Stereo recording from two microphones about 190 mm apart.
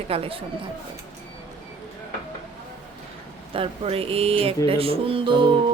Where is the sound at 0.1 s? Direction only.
30° right (ahead or behind).